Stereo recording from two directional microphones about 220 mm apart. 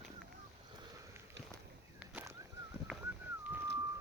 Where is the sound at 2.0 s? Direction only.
5° right (ahead or behind).